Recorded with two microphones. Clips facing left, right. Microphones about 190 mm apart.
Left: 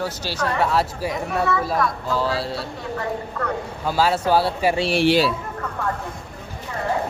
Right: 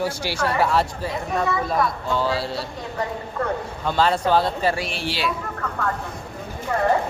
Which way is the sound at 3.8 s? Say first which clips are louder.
Even; 5° left (ahead or behind).